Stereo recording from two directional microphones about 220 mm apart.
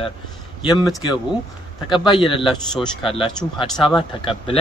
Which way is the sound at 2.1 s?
25° left (ahead or behind).